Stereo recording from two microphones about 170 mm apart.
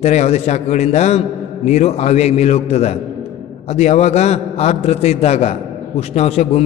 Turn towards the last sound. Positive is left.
turn(degrees=40)  # may be behind; listen again after turning